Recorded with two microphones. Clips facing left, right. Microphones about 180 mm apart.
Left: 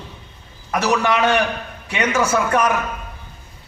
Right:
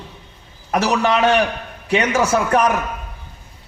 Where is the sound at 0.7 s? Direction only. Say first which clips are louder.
Right 1 dB; 30° right (ahead or behind).